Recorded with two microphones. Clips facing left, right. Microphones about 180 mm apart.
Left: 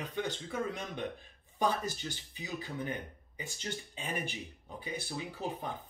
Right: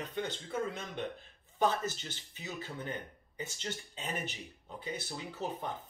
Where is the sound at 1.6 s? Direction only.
15° left (ahead or behind).